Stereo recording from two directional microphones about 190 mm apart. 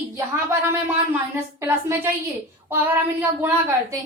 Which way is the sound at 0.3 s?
15° right (ahead or behind).